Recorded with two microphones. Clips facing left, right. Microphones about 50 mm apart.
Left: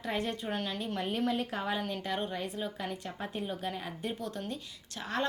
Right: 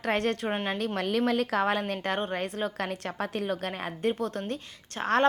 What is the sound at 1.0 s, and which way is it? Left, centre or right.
Speech, right.